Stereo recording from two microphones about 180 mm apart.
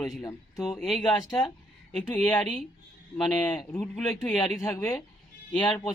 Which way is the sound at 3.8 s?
5° left (ahead or behind).